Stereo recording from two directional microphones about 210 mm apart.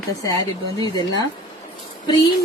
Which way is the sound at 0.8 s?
20° left (ahead or behind).